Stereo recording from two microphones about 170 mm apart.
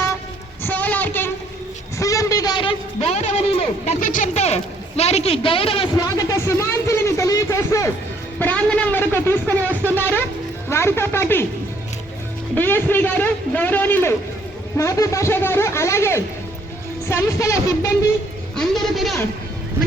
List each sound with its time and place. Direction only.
0.6 s a sound: 10° left (ahead or behind); by 3.9 s 35° left (ahead or behind)
4.0 s a man's voice: 50° left (ahead or behind); by 5.9 s 35° left (ahead or behind)
6.1 s a man's voice: 20° left (ahead or behind)
12.5 s a man's voice: 10° left (ahead or behind)
18.5 s a man's voice: centre (ahead or behind)